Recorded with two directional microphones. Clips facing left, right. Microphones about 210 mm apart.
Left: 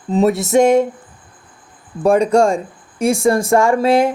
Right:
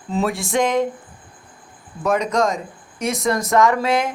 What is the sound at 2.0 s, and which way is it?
Speech, 30° left (ahead or behind).